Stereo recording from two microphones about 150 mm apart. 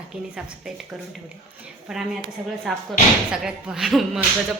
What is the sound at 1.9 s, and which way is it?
A woman's voice, 5° right (ahead or behind).